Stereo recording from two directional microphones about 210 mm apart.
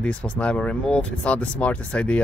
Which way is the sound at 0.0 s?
5° left (ahead or behind).